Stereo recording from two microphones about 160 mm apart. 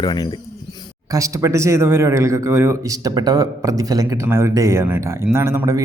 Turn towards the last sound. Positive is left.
turn(degrees=-15)  # may be behind; listen again after turning